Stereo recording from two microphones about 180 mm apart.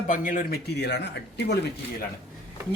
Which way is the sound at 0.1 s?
50° left (ahead or behind).